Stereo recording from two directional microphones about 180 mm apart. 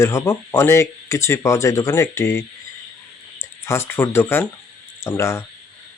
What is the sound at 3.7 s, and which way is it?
Speech, 10° left (ahead or behind).